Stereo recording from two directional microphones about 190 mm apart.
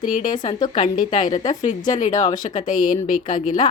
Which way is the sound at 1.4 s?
40° left (ahead or behind).